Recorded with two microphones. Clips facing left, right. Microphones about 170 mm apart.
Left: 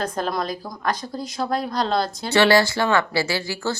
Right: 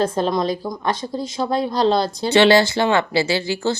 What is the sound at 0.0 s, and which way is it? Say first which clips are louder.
A woman's voice: right 6 dB; 25° right (ahead or behind).